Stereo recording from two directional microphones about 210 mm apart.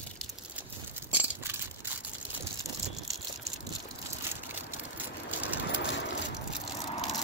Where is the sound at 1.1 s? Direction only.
10° right (ahead or behind).